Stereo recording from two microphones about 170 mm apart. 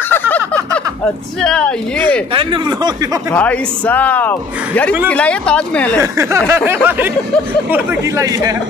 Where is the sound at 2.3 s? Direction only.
30° right (ahead or behind).